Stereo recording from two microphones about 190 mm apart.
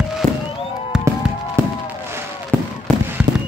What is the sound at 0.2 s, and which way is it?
Fireworks, 5° left (ahead or behind).